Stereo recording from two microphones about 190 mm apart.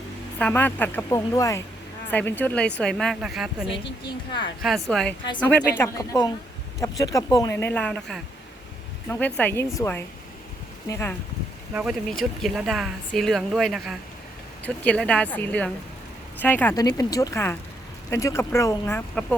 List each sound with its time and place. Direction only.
0.3 s speech: 10° left (ahead or behind)
11.7 s speech: 5° right (ahead or behind); by 19.2 s 10° left (ahead or behind)